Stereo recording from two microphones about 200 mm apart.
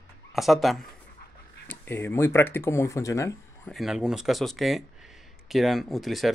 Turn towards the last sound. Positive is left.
turn(degrees=0)  # may be behind; listen again after turning